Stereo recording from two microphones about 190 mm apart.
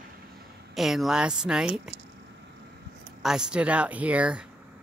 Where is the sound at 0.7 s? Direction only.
Centre (ahead or behind).